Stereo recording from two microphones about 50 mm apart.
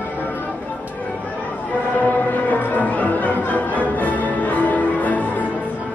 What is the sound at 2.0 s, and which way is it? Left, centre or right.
Music, left.